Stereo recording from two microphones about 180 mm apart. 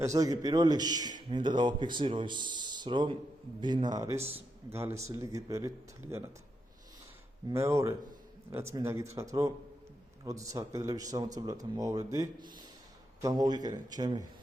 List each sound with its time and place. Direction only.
0.0 s a man's voice: 20° right (ahead or behind)
7.5 s a man's voice: 15° right (ahead or behind)